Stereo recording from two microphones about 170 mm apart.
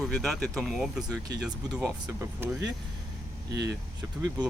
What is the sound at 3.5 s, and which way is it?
Speech, 90° right.